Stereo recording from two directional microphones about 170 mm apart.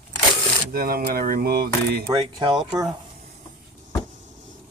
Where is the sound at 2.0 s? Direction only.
25° right (ahead or behind).